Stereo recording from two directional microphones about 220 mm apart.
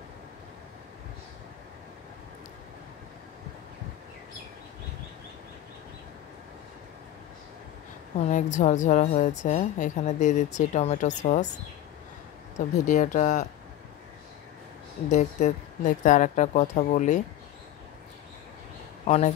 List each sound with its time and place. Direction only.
8.3 s a woman's voice: 35° left (ahead or behind)
12.5 s a woman's voice: 35° left (ahead or behind)
15.0 s a woman's voice: 35° left (ahead or behind)
19.0 s a woman's voice: 30° left (ahead or behind)